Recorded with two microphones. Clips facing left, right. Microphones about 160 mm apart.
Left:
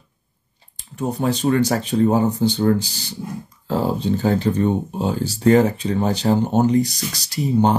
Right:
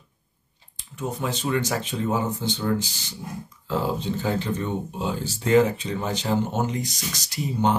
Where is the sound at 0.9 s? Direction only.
35° left (ahead or behind).